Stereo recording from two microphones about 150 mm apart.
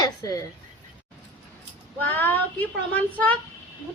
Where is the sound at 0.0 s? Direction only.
20° left (ahead or behind).